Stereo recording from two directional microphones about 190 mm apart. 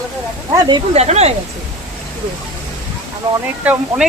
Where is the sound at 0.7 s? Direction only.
35° right (ahead or behind).